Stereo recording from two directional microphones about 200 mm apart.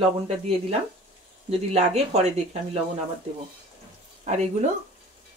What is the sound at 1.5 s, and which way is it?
Speech, 35° right (ahead or behind).